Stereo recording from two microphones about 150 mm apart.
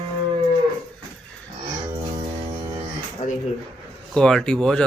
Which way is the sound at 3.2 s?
55° left (ahead or behind).